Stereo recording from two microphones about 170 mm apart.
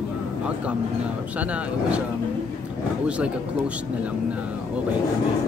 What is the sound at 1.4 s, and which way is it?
Speech, 10° right (ahead or behind).